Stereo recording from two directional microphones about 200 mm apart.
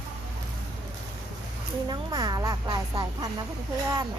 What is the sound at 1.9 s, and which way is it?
Speech, 20° right (ahead or behind).